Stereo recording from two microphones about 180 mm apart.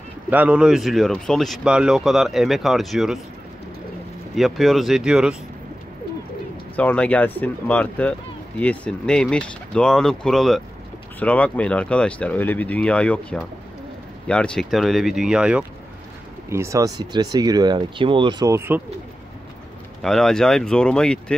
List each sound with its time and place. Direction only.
0.3 s speech: 5° right (ahead or behind)
4.4 s speech: centre (ahead or behind)
6.8 s speech: 5° left (ahead or behind); by 18.8 s 15° right (ahead or behind)
20.0 s speech: centre (ahead or behind)